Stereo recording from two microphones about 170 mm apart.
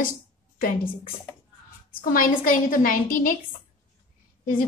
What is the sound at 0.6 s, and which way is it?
A woman's voice, 55° left (ahead or behind).